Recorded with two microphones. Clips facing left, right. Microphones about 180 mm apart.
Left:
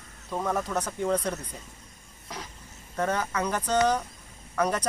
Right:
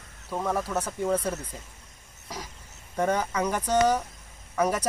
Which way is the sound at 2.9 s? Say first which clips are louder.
Right 2 dB; 10° right (ahead or behind).